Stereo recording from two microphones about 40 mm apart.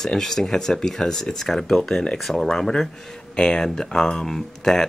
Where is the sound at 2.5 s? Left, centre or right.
Centre.